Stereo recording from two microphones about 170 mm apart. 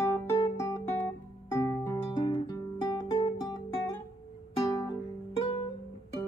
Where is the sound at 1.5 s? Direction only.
15° left (ahead or behind).